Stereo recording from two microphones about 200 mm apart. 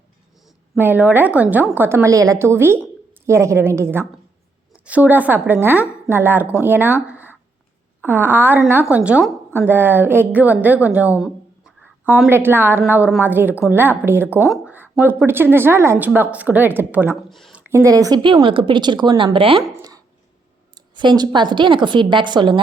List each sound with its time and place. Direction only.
0.4 s a woman's voice: 10° right (ahead or behind)
7.1 s a sound: 10° right (ahead or behind)
8.0 s a woman's voice: 10° right (ahead or behind)
17.2 s speech: centre (ahead or behind)
17.7 s speech: 15° right (ahead or behind)
20.7 s speech: 20° right (ahead or behind)